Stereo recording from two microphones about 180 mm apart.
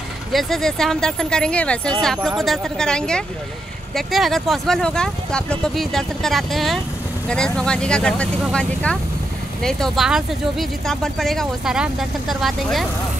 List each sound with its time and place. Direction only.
0.3 s speech: centre (ahead or behind)